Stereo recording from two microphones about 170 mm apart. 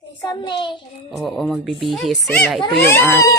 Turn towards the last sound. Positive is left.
turn(degrees=15)  # may be behind; listen again after turning